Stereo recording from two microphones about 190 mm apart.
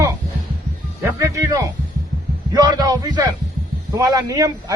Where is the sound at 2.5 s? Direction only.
20° right (ahead or behind).